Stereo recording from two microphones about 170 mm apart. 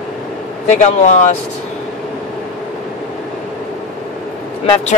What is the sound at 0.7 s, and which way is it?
Speech, 45° left (ahead or behind).